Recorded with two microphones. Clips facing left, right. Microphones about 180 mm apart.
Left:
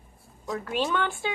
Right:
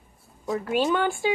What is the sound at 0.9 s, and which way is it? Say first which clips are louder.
Speech: right 5 dB; 10° right (ahead or behind).